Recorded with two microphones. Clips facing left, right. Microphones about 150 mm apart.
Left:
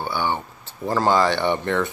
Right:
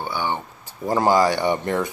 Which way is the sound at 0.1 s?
15° right (ahead or behind).